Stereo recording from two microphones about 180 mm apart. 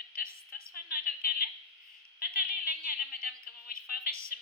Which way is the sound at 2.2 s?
55° left (ahead or behind).